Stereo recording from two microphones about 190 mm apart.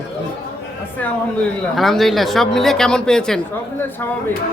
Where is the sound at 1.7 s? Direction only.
Centre (ahead or behind).